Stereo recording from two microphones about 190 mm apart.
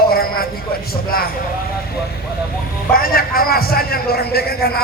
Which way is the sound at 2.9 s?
50° left (ahead or behind).